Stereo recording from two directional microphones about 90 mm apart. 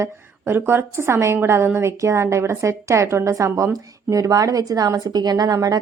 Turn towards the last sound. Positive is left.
turn(degrees=-45)  # may be behind; listen again after turning